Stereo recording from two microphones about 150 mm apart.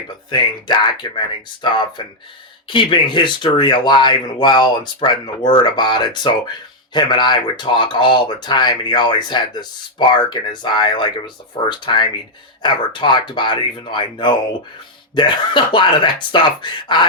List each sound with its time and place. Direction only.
0.3 s speech: 30° left (ahead or behind)